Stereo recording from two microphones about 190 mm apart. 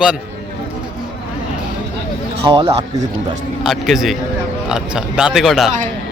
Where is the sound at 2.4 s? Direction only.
25° right (ahead or behind).